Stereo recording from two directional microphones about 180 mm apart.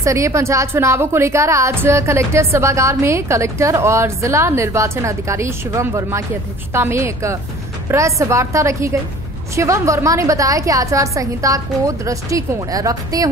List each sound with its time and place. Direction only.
0.0 s a woman's voice: 15° right (ahead or behind)